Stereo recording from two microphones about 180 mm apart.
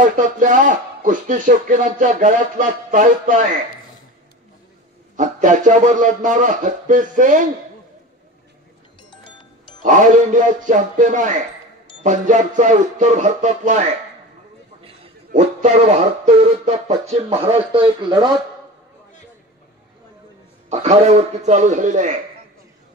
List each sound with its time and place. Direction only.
0.0 s speech: 45° right (ahead or behind)
5.1 s speech: 45° right (ahead or behind)
9.1 s music: 25° left (ahead or behind)
9.8 s speech: 45° right (ahead or behind)
15.3 s speech: 40° right (ahead or behind)
20.8 s speech: 35° right (ahead or behind)